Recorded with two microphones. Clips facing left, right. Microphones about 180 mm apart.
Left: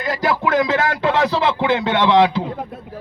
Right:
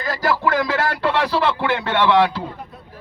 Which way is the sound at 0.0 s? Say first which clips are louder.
Left 1 dB; 20° left (ahead or behind).